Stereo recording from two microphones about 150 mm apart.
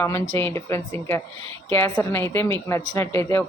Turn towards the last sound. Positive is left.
turn(degrees=20)  # may be behind; listen again after turning